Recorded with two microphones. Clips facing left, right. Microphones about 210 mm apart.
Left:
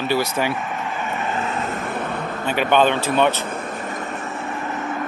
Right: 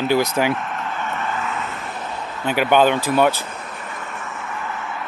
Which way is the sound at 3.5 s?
45° left (ahead or behind).